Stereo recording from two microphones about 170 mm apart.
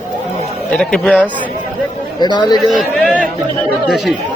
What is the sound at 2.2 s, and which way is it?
Speech, 25° left (ahead or behind).